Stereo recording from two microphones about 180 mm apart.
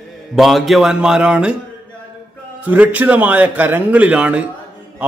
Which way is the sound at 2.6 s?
10° right (ahead or behind).